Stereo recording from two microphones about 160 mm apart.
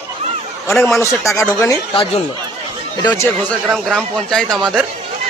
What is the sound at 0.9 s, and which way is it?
Speech, 20° left (ahead or behind).